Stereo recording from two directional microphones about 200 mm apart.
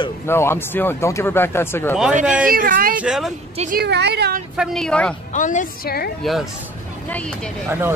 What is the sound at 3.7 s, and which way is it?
Speech, 55° right (ahead or behind).